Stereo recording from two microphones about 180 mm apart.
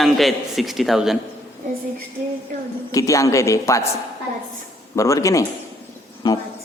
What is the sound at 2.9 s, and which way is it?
Speech, 15° left (ahead or behind).